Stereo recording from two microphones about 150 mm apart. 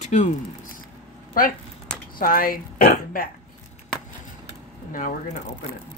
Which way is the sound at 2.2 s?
70° left (ahead or behind).